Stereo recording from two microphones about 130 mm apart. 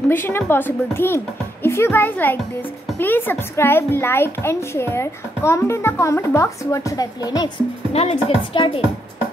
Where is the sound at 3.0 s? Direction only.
15° left (ahead or behind); by 7.5 s 30° left (ahead or behind).